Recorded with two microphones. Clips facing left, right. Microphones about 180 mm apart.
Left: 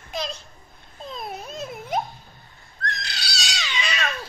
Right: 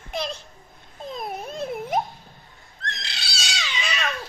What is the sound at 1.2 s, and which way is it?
Dog, 50° right (ahead or behind).